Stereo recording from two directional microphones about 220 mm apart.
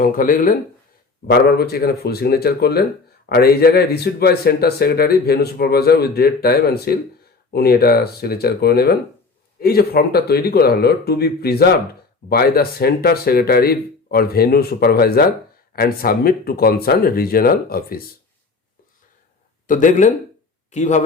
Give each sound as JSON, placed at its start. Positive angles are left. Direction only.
{"t": 0.0, "sound": "speech", "side_deg": 40}
{"t": 19.6, "sound": "speech", "side_deg": 35}